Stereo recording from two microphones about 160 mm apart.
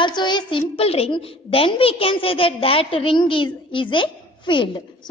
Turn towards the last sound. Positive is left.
turn(degrees=30)  # may be behind; listen again after turning